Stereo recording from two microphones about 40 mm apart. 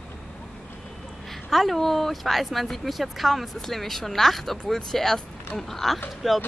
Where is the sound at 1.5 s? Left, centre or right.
Centre.